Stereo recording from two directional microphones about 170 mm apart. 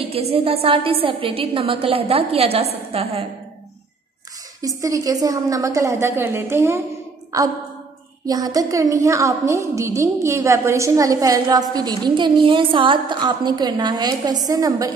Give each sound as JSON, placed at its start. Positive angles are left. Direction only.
{"t": 0.1, "sound": "a woman's voice", "side_deg": -35}
{"t": 4.6, "sound": "a woman's voice", "side_deg": -20}